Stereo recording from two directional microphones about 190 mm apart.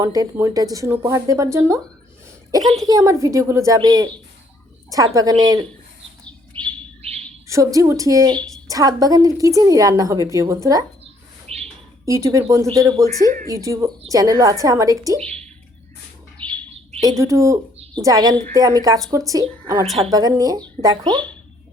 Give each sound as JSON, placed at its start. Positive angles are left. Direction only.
{"t": 0.0, "sound": "a woman's voice", "side_deg": -15}
{"t": 2.8, "sound": "a woman's voice", "side_deg": -15}
{"t": 7.4, "sound": "a woman's voice", "side_deg": -15}
{"t": 12.0, "sound": "a woman's voice", "side_deg": -15}
{"t": 17.0, "sound": "a woman's voice", "side_deg": -15}